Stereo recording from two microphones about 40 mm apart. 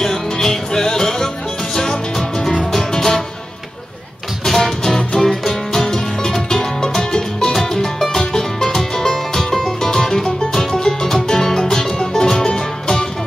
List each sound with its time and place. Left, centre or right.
0.0 s music: centre
4.5 s music: centre